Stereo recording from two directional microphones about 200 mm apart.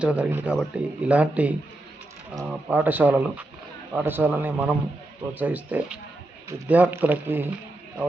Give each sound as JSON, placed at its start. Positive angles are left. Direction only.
{"t": 0.0, "sound": "speech", "side_deg": -5}